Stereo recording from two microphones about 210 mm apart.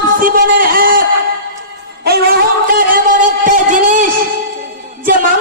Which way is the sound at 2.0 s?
50° right (ahead or behind).